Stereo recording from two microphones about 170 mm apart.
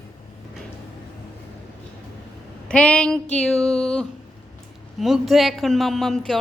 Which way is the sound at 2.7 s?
5° left (ahead or behind).